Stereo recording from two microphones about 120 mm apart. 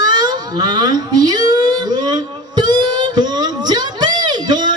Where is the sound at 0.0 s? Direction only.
35° right (ahead or behind).